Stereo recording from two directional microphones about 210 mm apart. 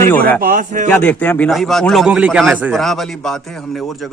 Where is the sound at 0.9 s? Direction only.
10° left (ahead or behind).